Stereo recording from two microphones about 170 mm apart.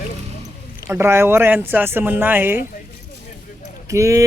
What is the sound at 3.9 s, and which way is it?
Speech, 20° right (ahead or behind).